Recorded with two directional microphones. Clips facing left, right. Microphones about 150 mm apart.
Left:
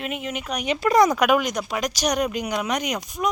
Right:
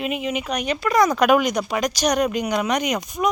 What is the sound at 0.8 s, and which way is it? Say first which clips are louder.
Speech: left 2 dB; 30° left (ahead or behind).